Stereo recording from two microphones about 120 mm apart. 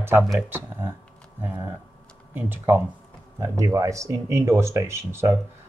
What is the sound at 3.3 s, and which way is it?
Speech, 25° right (ahead or behind).